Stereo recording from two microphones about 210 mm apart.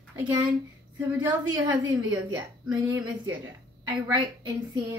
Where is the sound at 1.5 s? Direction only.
20° right (ahead or behind).